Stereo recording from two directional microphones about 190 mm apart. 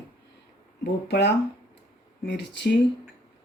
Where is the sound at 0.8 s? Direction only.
65° left (ahead or behind).